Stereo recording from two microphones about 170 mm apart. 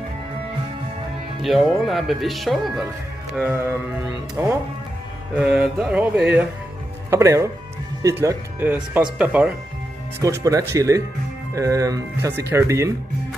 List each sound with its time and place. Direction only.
1.4 s speech: centre (ahead or behind); by 4.5 s 15° right (ahead or behind)
5.3 s speech: 5° right (ahead or behind)
10.2 s speech: 20° right (ahead or behind)